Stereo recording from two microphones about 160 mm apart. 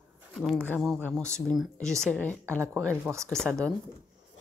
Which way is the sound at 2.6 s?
15° right (ahead or behind).